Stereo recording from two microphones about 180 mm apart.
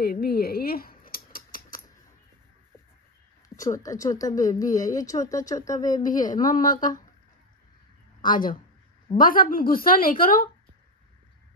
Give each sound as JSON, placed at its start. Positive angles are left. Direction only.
{"t": 0.0, "sound": "a sound", "side_deg": 60}
{"t": 3.4, "sound": "speech", "side_deg": 20}
{"t": 6.6, "sound": "a woman's voice", "side_deg": 45}
{"t": 9.1, "sound": "a woman's voice", "side_deg": 50}